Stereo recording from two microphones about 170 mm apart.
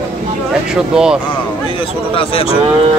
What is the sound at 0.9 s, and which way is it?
Speech, 5° right (ahead or behind).